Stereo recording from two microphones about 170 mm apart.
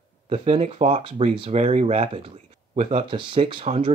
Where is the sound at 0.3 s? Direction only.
35° right (ahead or behind).